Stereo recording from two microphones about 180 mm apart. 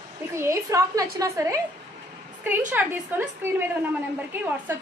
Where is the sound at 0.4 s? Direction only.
15° right (ahead or behind).